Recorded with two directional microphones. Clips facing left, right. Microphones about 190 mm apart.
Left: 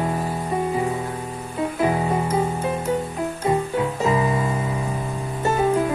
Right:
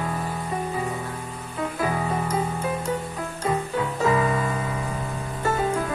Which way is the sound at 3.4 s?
25° left (ahead or behind).